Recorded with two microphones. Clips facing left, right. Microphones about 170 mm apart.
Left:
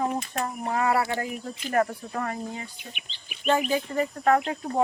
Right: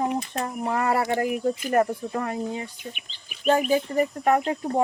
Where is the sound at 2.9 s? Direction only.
40° right (ahead or behind).